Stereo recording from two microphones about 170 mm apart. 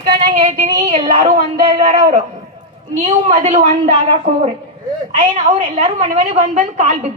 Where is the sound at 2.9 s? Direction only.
45° right (ahead or behind).